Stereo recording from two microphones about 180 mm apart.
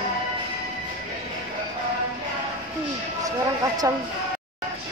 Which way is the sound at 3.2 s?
20° right (ahead or behind).